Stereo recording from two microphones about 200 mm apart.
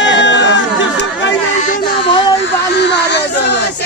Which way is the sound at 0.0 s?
65° left (ahead or behind).